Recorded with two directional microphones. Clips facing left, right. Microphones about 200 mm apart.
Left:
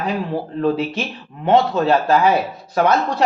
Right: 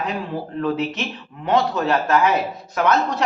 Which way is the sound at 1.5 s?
30° left (ahead or behind).